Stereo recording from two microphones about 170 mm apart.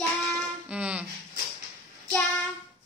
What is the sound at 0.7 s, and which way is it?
Music, 5° right (ahead or behind).